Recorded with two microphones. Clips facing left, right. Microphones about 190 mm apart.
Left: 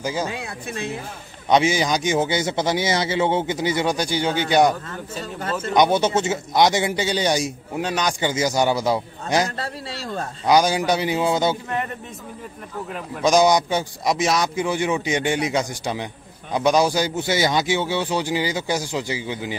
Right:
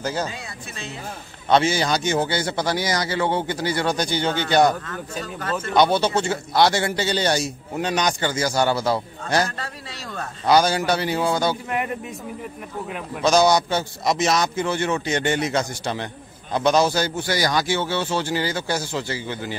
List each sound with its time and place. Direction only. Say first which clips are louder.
0.0 s a man's voice: left 1 dB; 10° left (ahead or behind)
0.3 s speech: left 6 dB; 60° left (ahead or behind)
1.5 s a man's voice: left 1 dB; 15° left (ahead or behind)
4.8 s a man's voice: even; 25° left (ahead or behind); by 8.3 s 5° left (ahead or behind)
8.3 s a man's voice: left 4 dB; 20° left (ahead or behind)
9.6 s speech: left 4 dB; 30° left (ahead or behind)
10.4 s a man's voice: even; 15° left (ahead or behind)
13.2 s a man's voice: left 1 dB; 15° left (ahead or behind)